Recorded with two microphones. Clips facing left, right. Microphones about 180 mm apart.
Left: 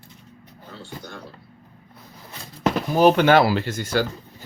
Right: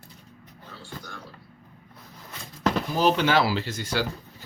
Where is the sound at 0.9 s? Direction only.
15° left (ahead or behind).